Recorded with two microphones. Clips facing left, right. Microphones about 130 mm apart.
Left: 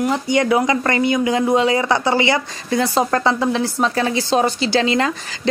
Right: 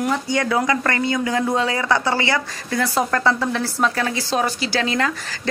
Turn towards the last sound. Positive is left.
turn(degrees=25)  # may be behind; listen again after turning